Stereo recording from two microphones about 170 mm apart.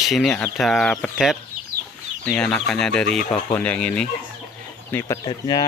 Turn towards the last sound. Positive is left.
turn(degrees=25)  # may be behind; listen again after turning